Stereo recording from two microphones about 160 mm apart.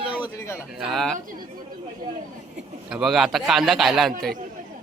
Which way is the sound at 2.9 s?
Centre (ahead or behind).